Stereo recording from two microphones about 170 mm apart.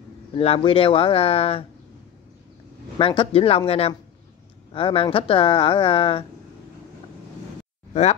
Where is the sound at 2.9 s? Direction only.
30° left (ahead or behind).